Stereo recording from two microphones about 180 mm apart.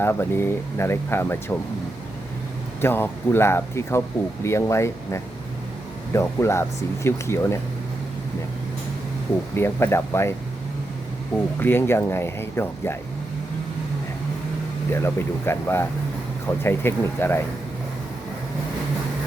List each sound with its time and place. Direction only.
0.0 s speech: 15° left (ahead or behind)
2.8 s speech: 15° left (ahead or behind)
9.6 s speech: 15° left (ahead or behind)
11.6 s speech: 10° left (ahead or behind)
14.9 s speech: 15° left (ahead or behind)